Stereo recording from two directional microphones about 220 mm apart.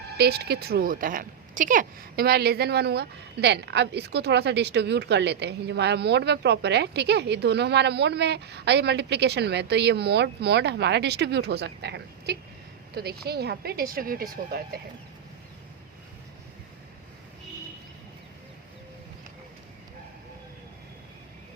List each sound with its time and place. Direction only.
0.2 s a woman's voice: 45° right (ahead or behind)